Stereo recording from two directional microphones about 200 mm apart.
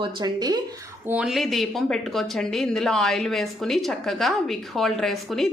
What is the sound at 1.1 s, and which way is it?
Speech, 5° right (ahead or behind).